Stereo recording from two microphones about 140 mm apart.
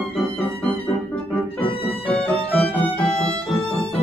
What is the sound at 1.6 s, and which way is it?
Music, 40° left (ahead or behind).